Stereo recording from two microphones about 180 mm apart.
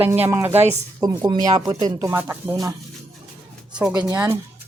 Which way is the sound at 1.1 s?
25° right (ahead or behind).